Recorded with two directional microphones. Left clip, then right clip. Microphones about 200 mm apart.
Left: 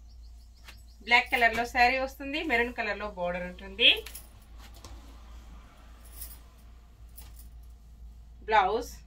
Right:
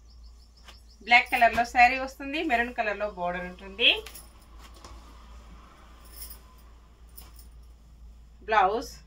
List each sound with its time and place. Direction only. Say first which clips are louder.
1.0 s a woman's voice: right 3 dB; 10° right (ahead or behind)
8.5 s a woman's voice: right 1 dB; 20° right (ahead or behind)